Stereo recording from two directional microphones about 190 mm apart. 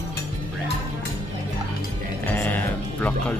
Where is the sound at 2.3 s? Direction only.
10° left (ahead or behind).